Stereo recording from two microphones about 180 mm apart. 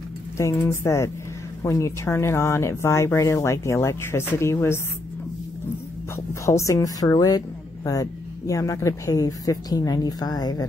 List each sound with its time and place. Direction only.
0.4 s speech: 15° left (ahead or behind)
6.1 s a woman's voice: 15° left (ahead or behind)